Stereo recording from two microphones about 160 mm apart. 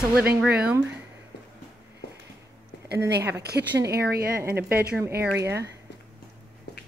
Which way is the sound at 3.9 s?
75° right (ahead or behind).